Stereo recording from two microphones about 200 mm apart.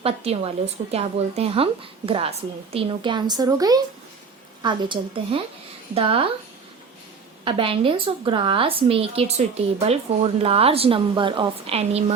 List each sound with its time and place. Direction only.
0.0 s a woman's voice: 30° right (ahead or behind)
7.4 s a woman's voice: 25° right (ahead or behind)